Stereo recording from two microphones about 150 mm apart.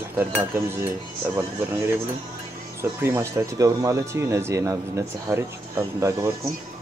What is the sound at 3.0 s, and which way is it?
Speech, 20° right (ahead or behind).